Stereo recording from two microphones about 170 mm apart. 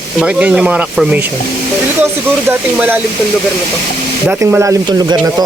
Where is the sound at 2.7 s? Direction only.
10° right (ahead or behind).